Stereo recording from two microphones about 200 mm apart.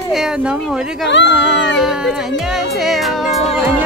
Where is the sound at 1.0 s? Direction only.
60° left (ahead or behind).